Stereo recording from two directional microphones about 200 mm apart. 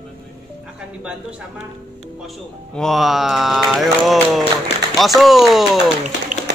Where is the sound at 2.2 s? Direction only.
Centre (ahead or behind).